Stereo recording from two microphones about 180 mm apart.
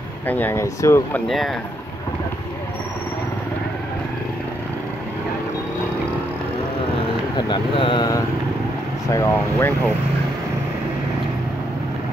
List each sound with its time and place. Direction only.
0.3 s speech: 10° left (ahead or behind)
1.2 s speech: centre (ahead or behind)
7.3 s speech: 25° left (ahead or behind)